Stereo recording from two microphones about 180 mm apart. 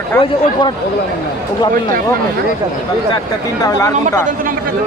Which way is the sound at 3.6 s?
20° left (ahead or behind).